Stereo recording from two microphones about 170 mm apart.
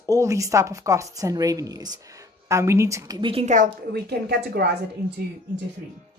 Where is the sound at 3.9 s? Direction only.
75° right (ahead or behind).